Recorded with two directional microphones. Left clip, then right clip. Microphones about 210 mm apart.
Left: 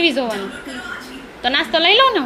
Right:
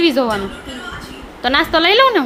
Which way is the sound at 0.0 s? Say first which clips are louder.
Right 3 dB; 20° right (ahead or behind).